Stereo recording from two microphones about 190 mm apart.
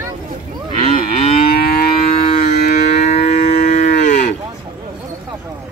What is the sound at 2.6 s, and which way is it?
Livestock, 40° left (ahead or behind).